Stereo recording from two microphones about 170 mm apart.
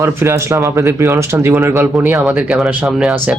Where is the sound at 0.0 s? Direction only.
15° right (ahead or behind).